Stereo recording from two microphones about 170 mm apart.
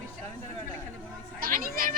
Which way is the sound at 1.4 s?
55° right (ahead or behind).